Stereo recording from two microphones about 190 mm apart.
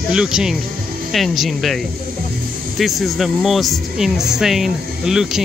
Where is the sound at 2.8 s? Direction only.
Centre (ahead or behind).